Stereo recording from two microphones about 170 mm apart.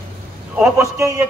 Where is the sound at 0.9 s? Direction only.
20° right (ahead or behind).